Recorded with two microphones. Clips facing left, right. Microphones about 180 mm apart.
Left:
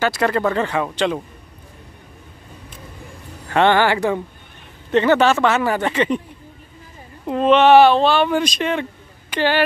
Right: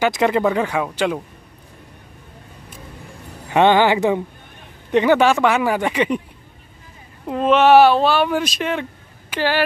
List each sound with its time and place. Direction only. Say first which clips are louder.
0.0 s speech: right 2 dB; 15° right (ahead or behind)
3.4 s speech: right 1 dB; 15° right (ahead or behind)
7.2 s speech: left 1 dB; 5° right (ahead or behind)